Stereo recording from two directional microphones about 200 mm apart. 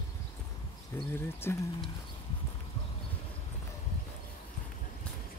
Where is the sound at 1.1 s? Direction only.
10° left (ahead or behind).